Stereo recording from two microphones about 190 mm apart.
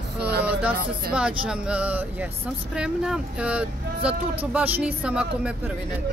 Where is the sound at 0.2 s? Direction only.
55° right (ahead or behind).